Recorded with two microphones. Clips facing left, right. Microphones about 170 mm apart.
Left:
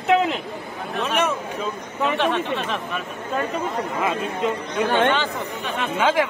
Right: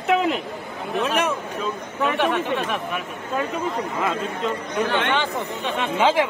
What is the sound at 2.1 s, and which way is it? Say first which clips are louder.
Speech: right 1 dB; 10° right (ahead or behind).